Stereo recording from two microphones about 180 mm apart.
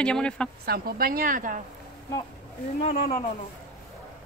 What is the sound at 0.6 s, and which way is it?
Speech, 55° right (ahead or behind).